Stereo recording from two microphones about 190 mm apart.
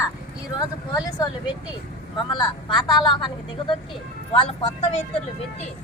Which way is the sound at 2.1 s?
25° left (ahead or behind).